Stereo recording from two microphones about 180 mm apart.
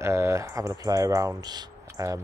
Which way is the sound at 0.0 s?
15° right (ahead or behind).